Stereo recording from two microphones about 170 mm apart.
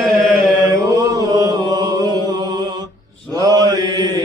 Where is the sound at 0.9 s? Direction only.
25° right (ahead or behind).